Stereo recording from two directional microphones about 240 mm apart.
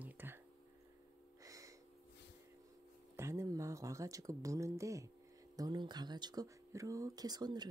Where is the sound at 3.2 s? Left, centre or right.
Centre.